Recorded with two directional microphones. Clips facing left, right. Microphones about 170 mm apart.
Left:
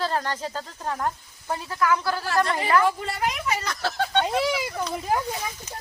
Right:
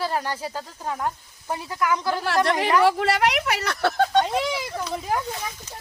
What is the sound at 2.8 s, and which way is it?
Speech, 80° right.